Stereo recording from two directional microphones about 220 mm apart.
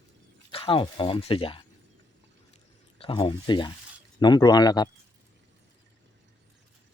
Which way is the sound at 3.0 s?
25° left (ahead or behind).